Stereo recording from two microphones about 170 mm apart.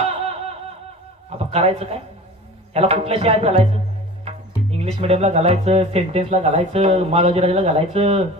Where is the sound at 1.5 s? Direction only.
35° right (ahead or behind).